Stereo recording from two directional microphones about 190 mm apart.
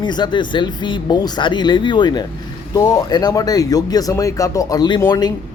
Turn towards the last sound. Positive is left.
turn(degrees=20)  # may be behind; listen again after turning